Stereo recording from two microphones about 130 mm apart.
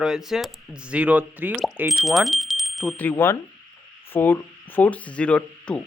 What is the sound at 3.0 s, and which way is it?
Speech, 15° left (ahead or behind).